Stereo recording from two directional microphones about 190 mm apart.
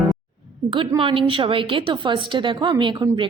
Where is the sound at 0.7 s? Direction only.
25° right (ahead or behind).